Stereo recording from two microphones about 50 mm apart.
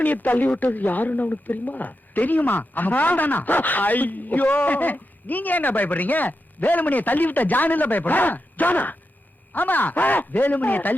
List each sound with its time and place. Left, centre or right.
0.0 s speech: left